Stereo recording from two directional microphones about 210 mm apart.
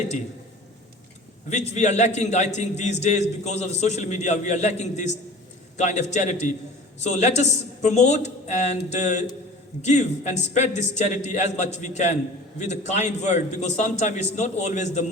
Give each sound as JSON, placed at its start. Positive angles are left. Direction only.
{"t": 1.5, "sound": "a man's voice", "side_deg": 35}